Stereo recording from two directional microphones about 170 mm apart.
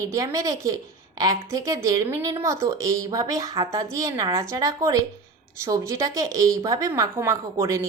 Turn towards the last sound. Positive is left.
turn(degrees=-15)  # may be behind; listen again after turning